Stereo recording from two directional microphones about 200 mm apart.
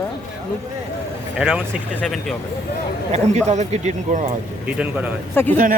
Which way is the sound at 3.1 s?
35° right (ahead or behind).